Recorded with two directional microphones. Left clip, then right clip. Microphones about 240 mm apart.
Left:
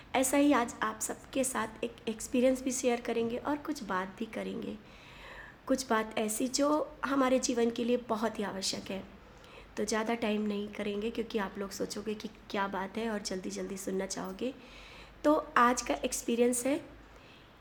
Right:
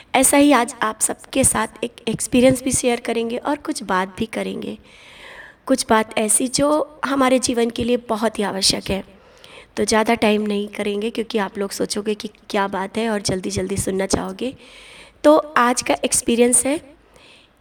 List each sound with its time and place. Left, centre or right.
0.1 s a woman's voice: right